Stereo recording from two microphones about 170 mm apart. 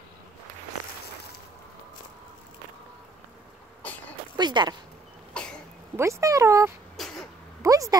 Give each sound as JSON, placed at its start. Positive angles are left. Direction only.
{"t": 4.4, "sound": "speech", "side_deg": -25}
{"t": 5.3, "sound": "cough", "side_deg": 5}
{"t": 5.9, "sound": "speech", "side_deg": -15}
{"t": 7.0, "sound": "cough", "side_deg": 0}
{"t": 7.6, "sound": "a sound", "side_deg": -20}